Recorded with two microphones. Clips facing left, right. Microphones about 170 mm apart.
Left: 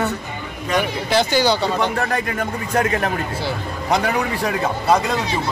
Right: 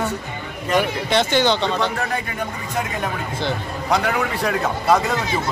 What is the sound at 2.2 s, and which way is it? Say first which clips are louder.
Speech: left 4 dB; 70° left (ahead or behind).